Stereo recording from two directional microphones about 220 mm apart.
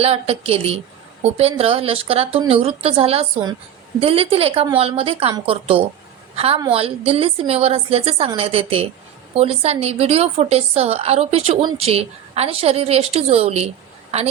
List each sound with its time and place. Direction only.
0.0 s a woman's voice: 25° right (ahead or behind)